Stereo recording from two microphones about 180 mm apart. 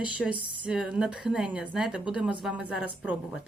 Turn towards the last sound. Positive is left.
turn(degrees=-5)  # may be behind; listen again after turning